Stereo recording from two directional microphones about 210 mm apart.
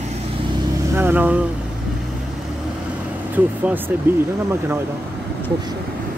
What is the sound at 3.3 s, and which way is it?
Speech, 10° right (ahead or behind).